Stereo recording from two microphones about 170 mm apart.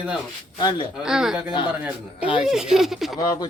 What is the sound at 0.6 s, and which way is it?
Speech, 25° left (ahead or behind).